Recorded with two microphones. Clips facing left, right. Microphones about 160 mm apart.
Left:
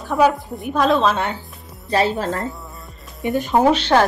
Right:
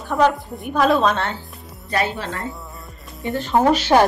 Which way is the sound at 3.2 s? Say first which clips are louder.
Left 4 dB; 20° left (ahead or behind).